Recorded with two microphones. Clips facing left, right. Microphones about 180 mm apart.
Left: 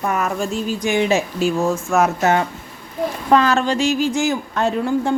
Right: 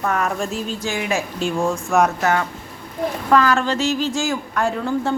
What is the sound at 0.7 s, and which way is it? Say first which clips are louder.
Speech: left 7 dB; 15° left (ahead or behind).